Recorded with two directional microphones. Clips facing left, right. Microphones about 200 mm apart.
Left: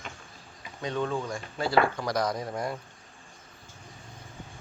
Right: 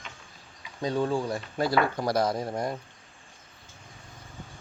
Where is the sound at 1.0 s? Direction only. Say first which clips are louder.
Right 3 dB; 35° right (ahead or behind).